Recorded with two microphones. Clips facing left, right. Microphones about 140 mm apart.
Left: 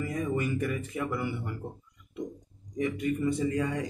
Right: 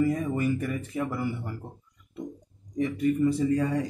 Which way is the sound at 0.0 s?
35° right (ahead or behind).